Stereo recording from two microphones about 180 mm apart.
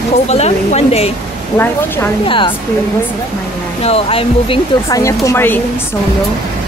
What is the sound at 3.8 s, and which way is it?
Speech, 35° left (ahead or behind).